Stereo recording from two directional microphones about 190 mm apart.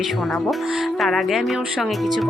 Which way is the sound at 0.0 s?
Centre (ahead or behind).